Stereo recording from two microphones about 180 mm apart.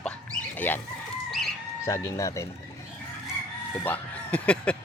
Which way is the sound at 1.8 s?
15° left (ahead or behind).